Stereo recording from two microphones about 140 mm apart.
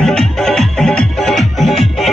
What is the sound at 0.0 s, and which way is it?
Music, 5° left (ahead or behind).